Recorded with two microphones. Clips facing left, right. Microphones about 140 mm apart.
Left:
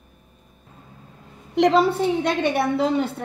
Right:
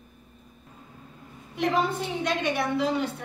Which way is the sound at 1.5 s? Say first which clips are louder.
Left 8 dB; 80° left.